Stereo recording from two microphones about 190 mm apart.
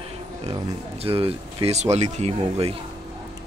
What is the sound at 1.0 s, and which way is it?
Speech, 30° right (ahead or behind).